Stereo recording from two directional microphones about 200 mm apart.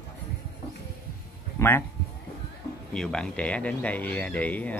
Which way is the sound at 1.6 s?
10° left (ahead or behind).